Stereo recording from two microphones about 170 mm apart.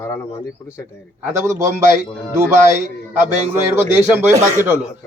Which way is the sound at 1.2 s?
15° right (ahead or behind).